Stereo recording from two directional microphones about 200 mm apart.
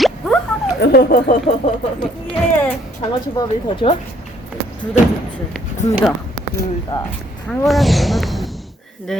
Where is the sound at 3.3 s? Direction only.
25° left (ahead or behind).